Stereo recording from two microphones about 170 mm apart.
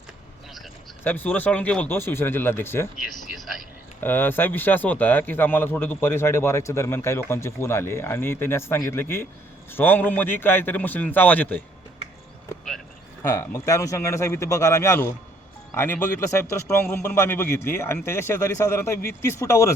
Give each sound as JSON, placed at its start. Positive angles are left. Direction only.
{"t": 1.0, "sound": "speech", "side_deg": 10}
{"t": 4.0, "sound": "speech", "side_deg": 10}
{"t": 13.2, "sound": "speech", "side_deg": 20}